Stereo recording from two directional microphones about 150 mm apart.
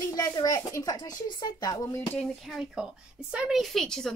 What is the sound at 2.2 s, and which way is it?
A woman's voice, centre (ahead or behind).